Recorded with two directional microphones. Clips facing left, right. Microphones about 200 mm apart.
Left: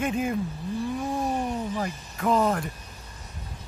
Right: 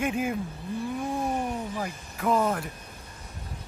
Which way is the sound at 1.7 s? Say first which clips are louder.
Left 3 dB; 5° right (ahead or behind).